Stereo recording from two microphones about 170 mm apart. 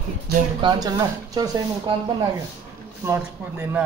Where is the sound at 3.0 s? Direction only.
15° right (ahead or behind).